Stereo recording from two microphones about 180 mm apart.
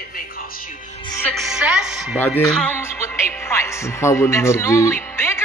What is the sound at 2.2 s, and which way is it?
Speech, 5° left (ahead or behind).